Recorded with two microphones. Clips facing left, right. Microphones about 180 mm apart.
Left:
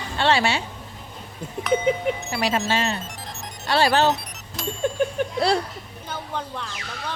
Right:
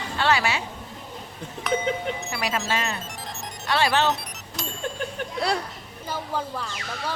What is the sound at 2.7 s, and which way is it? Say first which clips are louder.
Speech: left 4 dB; 30° left (ahead or behind).